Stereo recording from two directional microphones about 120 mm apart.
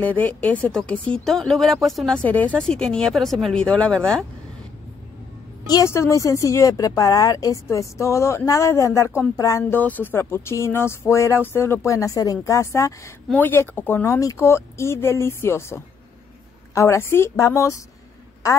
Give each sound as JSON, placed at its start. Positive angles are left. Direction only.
{"t": 0.0, "sound": "speech", "side_deg": 15}
{"t": 5.7, "sound": "speech", "side_deg": 25}